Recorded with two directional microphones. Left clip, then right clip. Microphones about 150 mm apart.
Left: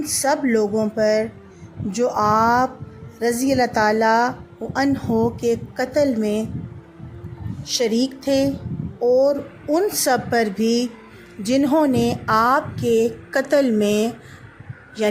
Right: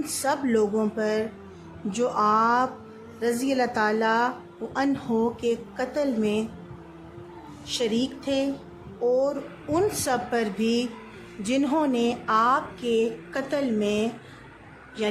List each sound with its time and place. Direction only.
0.1 s a woman's voice: 15° left (ahead or behind)
7.7 s a woman's voice: 25° left (ahead or behind); by 14.1 s 40° left (ahead or behind)
15.0 s a woman's voice: 30° left (ahead or behind)